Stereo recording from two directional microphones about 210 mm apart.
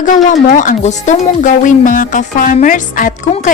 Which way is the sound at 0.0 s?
40° left (ahead or behind).